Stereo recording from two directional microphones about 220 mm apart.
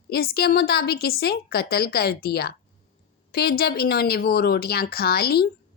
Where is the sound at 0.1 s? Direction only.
45° left (ahead or behind).